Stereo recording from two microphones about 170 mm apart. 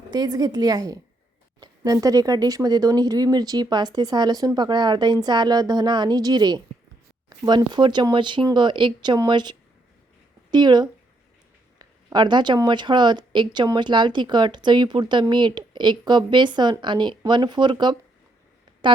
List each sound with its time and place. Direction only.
0.1 s speech: 20° right (ahead or behind)
7.3 s a sound: 25° right (ahead or behind)
7.7 s speech: 25° right (ahead or behind)